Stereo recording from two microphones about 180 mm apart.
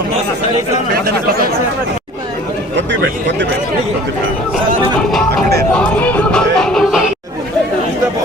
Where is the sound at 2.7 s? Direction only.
80° right.